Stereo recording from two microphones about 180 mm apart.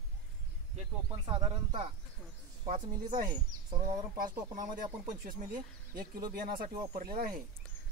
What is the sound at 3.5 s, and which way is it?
Speech, 20° right (ahead or behind).